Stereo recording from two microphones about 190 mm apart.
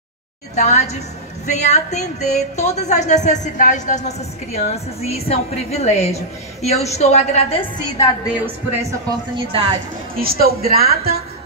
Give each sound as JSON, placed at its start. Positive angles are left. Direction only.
{"t": 0.6, "sound": "music", "side_deg": 35}
{"t": 9.5, "sound": "a woman's voice", "side_deg": -25}
{"t": 10.1, "sound": "a woman's voice", "side_deg": -50}